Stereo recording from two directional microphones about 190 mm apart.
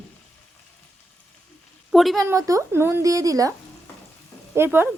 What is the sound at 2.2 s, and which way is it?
A woman's voice, 15° right (ahead or behind).